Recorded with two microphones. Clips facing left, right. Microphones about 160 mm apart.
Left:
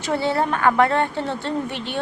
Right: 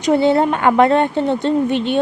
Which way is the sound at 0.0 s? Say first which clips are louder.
Right 8 dB; 20° right (ahead or behind).